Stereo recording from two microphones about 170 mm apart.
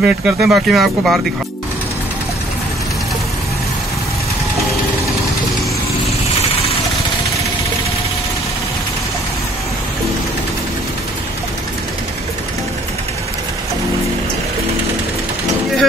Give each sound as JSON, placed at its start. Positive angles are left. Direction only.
{"t": 0.0, "sound": "speech", "side_deg": -5}